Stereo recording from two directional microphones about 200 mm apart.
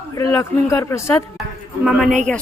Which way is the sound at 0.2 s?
15° left (ahead or behind).